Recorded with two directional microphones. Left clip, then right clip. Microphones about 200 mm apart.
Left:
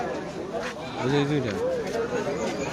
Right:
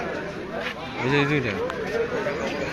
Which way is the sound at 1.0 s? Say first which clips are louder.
Right 3 dB; 10° left (ahead or behind).